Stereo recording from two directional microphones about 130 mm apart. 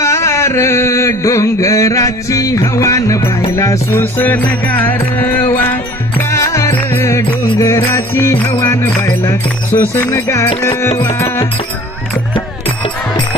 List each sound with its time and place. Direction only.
0.0 s a sound: 20° left (ahead or behind)
3.5 s music: 25° left (ahead or behind)
10.9 s music: 50° left (ahead or behind)
11.1 s music: 20° left (ahead or behind)